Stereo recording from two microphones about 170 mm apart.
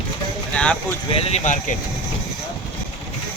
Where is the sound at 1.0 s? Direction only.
35° left (ahead or behind).